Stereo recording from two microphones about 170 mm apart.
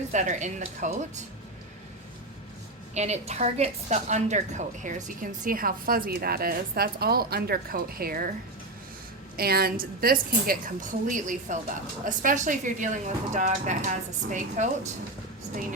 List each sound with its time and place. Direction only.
0.1 s a woman's voice: 45° right (ahead or behind)
2.9 s a woman's voice: 40° right (ahead or behind); by 8.3 s 60° right (ahead or behind)
9.3 s a woman's voice: 65° right (ahead or behind); by 14.9 s 45° right (ahead or behind)